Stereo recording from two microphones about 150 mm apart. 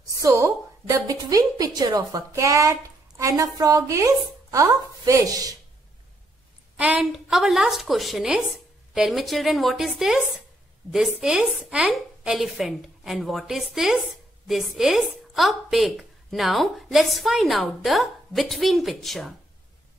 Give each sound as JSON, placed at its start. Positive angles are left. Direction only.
{"t": 0.1, "sound": "a woman's voice", "side_deg": -20}
{"t": 6.8, "sound": "a woman's voice", "side_deg": -5}